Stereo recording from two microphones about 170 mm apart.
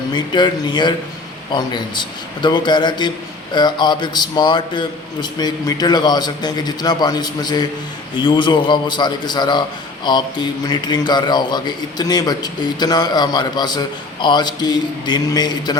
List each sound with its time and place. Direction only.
0.1 s a man's voice: 25° left (ahead or behind)